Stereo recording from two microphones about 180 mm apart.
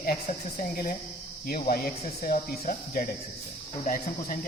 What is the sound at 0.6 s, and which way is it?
Speech, 50° left (ahead or behind).